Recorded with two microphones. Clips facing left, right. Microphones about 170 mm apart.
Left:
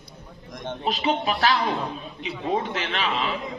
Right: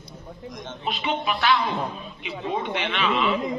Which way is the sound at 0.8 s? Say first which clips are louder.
Left 3 dB; 40° left (ahead or behind).